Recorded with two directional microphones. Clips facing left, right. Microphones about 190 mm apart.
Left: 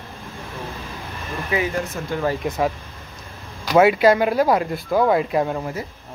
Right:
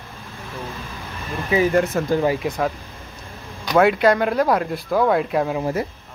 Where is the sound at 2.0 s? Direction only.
65° right (ahead or behind).